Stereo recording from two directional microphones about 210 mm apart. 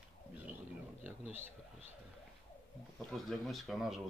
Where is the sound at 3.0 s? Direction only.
Centre (ahead or behind).